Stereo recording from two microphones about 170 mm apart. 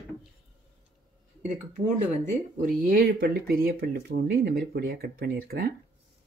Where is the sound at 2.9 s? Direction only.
60° right (ahead or behind).